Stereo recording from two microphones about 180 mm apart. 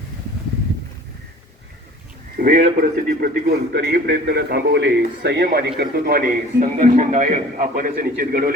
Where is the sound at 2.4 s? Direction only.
40° right (ahead or behind).